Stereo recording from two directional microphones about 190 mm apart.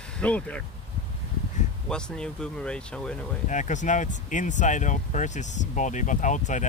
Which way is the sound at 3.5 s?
40° left (ahead or behind).